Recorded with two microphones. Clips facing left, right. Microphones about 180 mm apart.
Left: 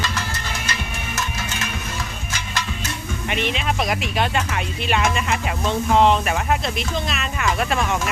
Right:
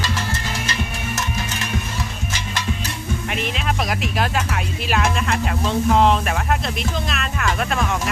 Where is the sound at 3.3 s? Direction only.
Centre (ahead or behind).